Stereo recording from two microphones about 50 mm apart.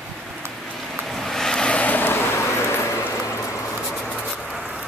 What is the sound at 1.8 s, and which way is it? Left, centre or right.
Vehicle, left.